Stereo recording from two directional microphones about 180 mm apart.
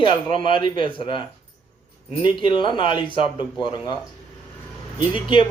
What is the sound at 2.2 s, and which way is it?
A woman's voice, 25° left (ahead or behind).